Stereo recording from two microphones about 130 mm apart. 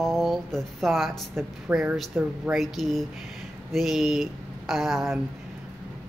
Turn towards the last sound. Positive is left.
turn(degrees=0)  # may be behind; listen again after turning